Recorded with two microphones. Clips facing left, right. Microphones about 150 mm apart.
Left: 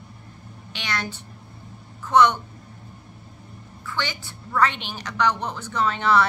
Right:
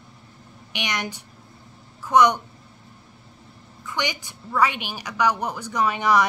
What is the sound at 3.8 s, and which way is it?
A woman's voice, 15° right (ahead or behind).